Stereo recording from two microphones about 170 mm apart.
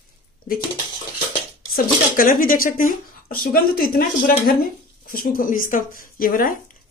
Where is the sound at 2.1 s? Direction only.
55° left (ahead or behind).